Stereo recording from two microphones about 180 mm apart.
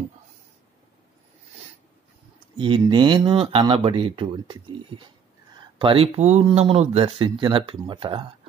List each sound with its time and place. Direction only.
2.5 s speech: 30° right (ahead or behind)